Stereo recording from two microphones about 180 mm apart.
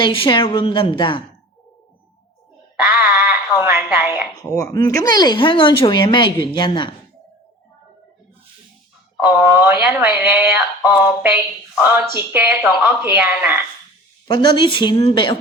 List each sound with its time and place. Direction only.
0.0 s speech: 25° left (ahead or behind)
2.8 s a sound: 10° right (ahead or behind)
4.4 s speech: 20° left (ahead or behind)
9.2 s speech: 10° right (ahead or behind)
14.5 s speech: 25° left (ahead or behind)